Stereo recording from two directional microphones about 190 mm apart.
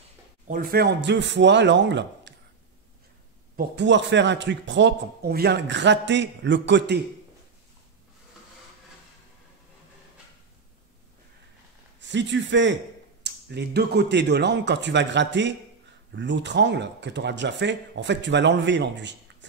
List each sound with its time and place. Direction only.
0.5 s a man's voice: 50° right (ahead or behind); by 2.3 s 70° right (ahead or behind)
3.5 s a man's voice: 65° right (ahead or behind)
12.0 s a man's voice: 70° right (ahead or behind)